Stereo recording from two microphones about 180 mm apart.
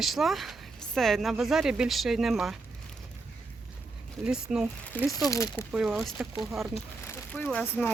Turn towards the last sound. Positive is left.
turn(degrees=5)  # may be behind; listen again after turning